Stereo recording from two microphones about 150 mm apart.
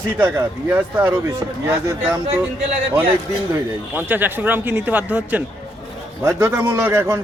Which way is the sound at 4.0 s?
10° right (ahead or behind).